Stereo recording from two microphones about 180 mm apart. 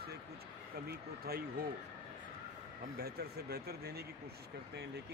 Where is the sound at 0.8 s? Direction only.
60° right (ahead or behind).